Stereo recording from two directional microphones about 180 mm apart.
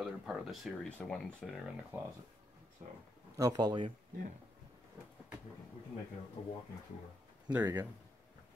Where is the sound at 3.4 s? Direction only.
20° right (ahead or behind).